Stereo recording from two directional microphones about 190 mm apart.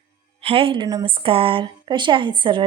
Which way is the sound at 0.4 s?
30° right (ahead or behind).